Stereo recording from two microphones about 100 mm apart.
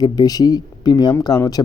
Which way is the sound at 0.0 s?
40° left (ahead or behind).